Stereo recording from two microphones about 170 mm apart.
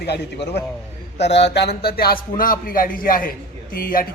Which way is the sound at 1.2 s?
90° left.